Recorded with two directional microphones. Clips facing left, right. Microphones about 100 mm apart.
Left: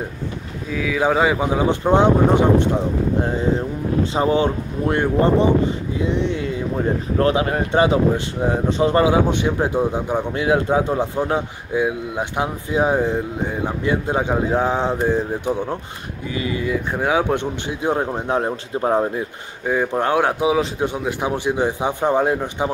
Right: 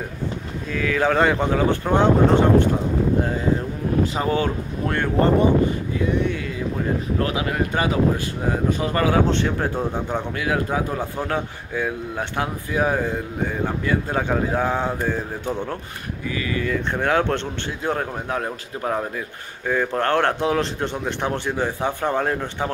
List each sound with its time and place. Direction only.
0.7 s speech: 5° left (ahead or behind)
4.0 s a man's voice: 25° left (ahead or behind)
10.3 s a man's voice: 25° left (ahead or behind)
19.6 s speech: 15° left (ahead or behind)